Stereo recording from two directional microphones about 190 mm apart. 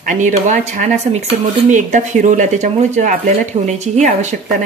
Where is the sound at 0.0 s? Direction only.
40° right (ahead or behind).